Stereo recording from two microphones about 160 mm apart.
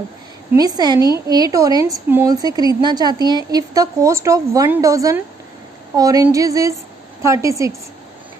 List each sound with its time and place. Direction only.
0.6 s speech: 25° right (ahead or behind)